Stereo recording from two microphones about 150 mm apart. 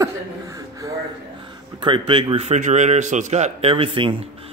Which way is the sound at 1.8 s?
35° right (ahead or behind).